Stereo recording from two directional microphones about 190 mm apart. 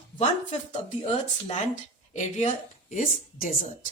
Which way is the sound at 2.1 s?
40° left (ahead or behind).